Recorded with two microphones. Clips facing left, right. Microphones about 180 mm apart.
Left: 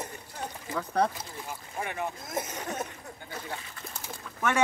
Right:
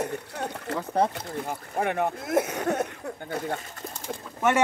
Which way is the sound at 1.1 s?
65° right (ahead or behind).